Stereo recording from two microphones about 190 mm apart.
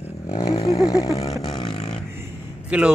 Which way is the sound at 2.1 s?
10° right (ahead or behind).